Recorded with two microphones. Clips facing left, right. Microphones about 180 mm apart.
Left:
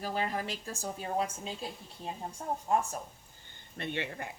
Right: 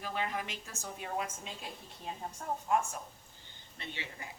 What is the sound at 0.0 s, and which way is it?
A woman's voice, 35° left (ahead or behind).